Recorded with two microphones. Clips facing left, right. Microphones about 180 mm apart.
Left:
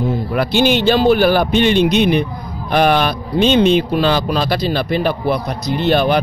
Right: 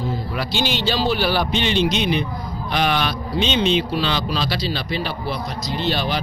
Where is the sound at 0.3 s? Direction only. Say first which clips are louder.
Left 11 dB; 55° left (ahead or behind).